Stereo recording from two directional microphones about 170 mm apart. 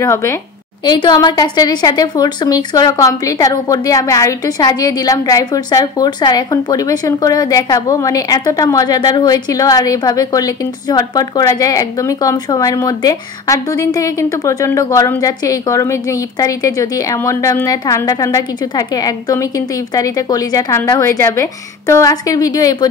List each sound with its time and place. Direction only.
0.0 s a woman's voice: 15° left (ahead or behind)